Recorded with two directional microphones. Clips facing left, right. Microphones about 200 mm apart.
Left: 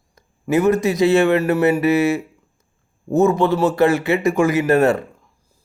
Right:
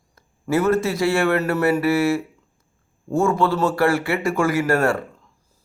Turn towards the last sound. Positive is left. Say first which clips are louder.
# left 4 dB
turn(degrees=20)  # may be behind; listen again after turning